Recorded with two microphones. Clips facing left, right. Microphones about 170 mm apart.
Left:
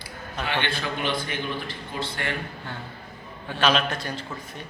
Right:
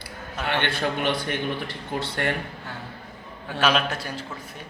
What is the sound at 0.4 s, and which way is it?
Speech, 60° right (ahead or behind).